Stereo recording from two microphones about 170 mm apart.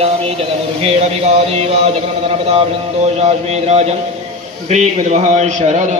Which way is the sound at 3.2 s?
40° right (ahead or behind).